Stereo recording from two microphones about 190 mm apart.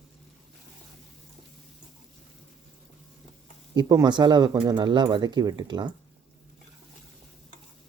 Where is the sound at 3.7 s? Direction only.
20° right (ahead or behind).